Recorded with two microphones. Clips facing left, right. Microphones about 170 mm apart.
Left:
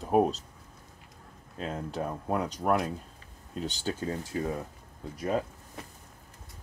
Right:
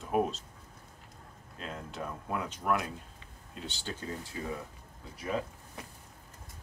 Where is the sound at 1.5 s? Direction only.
40° left (ahead or behind).